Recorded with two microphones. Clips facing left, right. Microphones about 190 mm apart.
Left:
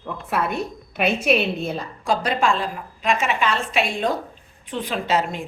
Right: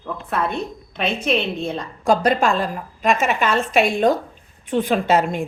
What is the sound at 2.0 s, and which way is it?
A woman's voice, 45° right (ahead or behind).